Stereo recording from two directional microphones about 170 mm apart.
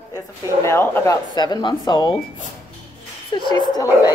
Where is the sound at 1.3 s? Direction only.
25° left (ahead or behind).